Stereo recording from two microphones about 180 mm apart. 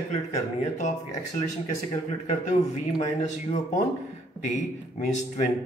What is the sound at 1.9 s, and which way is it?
Speech, 40° left (ahead or behind).